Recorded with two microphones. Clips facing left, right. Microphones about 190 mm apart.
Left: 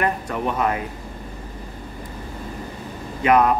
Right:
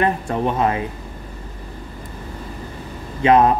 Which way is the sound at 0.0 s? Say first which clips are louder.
Right 4 dB; 25° right (ahead or behind).